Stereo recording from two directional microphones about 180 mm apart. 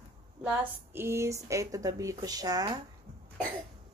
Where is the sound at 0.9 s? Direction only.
15° right (ahead or behind).